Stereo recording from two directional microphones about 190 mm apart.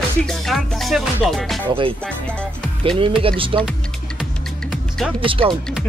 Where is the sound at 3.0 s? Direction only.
30° right (ahead or behind).